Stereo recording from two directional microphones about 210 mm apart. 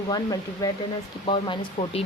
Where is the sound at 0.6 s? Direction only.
20° left (ahead or behind).